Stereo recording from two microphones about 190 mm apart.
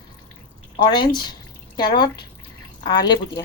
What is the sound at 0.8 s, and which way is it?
A woman's voice, 25° left (ahead or behind).